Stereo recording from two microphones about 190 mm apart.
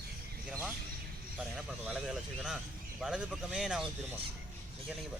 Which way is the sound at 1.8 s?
5° right (ahead or behind).